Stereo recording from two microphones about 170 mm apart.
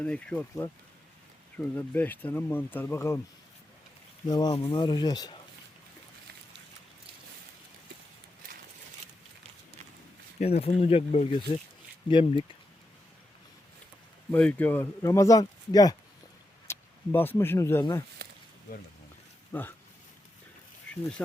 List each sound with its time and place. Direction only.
0.0 s speech: 5° left (ahead or behind)
4.3 s speech: 25° left (ahead or behind)
10.4 s speech: 40° left (ahead or behind)
14.3 s speech: 10° left (ahead or behind)
18.2 s a sound: 70° right (ahead or behind)
19.5 s speech: 10° left (ahead or behind)